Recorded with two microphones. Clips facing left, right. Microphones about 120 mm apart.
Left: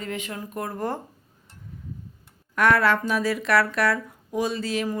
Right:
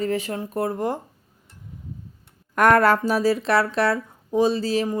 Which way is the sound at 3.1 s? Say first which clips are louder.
Right 3 dB; 35° right (ahead or behind).